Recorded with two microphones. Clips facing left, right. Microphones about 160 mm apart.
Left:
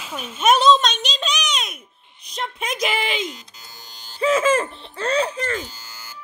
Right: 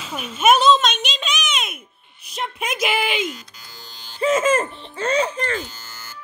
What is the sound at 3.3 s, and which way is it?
Music, 20° left (ahead or behind).